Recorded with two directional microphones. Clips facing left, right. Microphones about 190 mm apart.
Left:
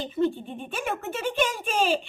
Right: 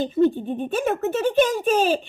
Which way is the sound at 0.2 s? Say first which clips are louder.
Right 6 dB; 40° right (ahead or behind).